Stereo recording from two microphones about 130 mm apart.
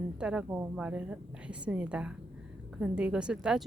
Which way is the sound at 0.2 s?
5° right (ahead or behind).